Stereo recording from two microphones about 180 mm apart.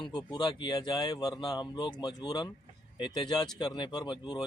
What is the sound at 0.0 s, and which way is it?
A man's voice, 25° left (ahead or behind).